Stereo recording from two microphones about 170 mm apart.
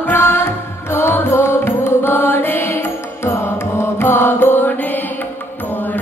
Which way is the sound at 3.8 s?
15° left (ahead or behind).